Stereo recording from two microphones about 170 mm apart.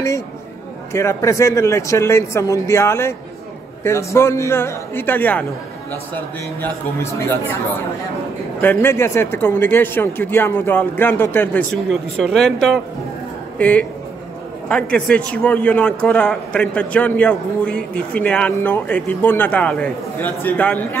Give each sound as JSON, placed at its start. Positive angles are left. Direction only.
{"t": 0.9, "sound": "a man's voice", "side_deg": 15}
{"t": 6.6, "sound": "a man's voice", "side_deg": 15}
{"t": 8.5, "sound": "a man's voice", "side_deg": 15}